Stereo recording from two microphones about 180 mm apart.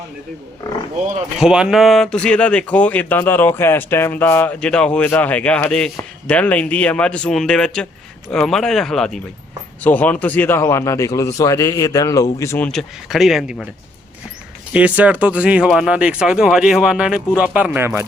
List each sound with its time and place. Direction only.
1.4 s speech: 5° right (ahead or behind)
14.7 s speech: 5° right (ahead or behind)